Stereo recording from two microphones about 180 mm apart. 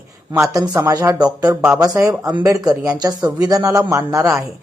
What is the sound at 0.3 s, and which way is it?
A man's voice, 20° right (ahead or behind).